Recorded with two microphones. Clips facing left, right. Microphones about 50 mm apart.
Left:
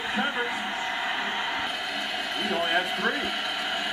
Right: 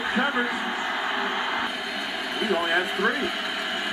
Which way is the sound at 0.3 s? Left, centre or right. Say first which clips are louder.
Right 3 dB; centre.